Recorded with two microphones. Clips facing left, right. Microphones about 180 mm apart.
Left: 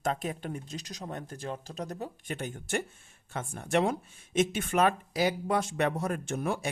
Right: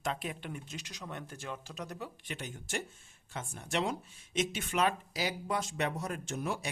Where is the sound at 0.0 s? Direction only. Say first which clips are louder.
Left 5 dB; 45° left (ahead or behind).